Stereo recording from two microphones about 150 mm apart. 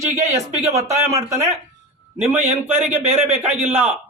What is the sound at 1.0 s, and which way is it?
A man's voice, 20° right (ahead or behind).